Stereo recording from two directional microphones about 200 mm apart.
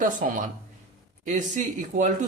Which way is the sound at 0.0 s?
40° right (ahead or behind).